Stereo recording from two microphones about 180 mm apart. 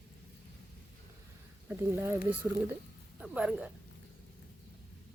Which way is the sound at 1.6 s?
10° right (ahead or behind).